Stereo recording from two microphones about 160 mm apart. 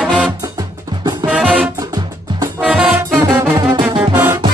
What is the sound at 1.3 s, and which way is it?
Music, 10° right (ahead or behind).